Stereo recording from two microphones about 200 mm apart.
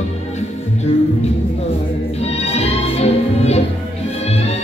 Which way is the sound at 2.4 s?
30° left (ahead or behind).